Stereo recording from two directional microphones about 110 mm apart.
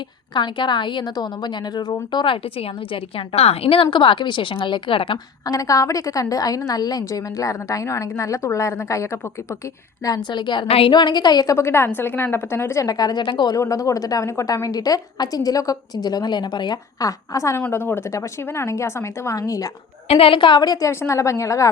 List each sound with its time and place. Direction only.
0.3 s a woman's voice: 45° left (ahead or behind)
5.5 s a woman's voice: 30° left (ahead or behind)
10.2 s a woman's voice: 45° left (ahead or behind)
10.7 s a woman's voice: 55° left (ahead or behind); by 11.5 s 40° left (ahead or behind)
11.5 s a woman's voice: 25° left (ahead or behind); by 13.6 s 45° left (ahead or behind)
13.6 s a woman's voice: 30° left (ahead or behind)
20.1 s a woman's voice: 60° left (ahead or behind); by 20.9 s 40° left (ahead or behind)
20.9 s a woman's voice: 25° left (ahead or behind)